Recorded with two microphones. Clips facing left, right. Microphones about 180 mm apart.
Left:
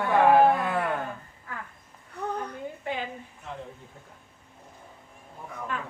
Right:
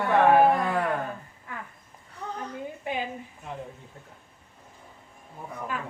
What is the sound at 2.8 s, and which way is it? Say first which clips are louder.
Speech: right 1 dB; 15° right (ahead or behind).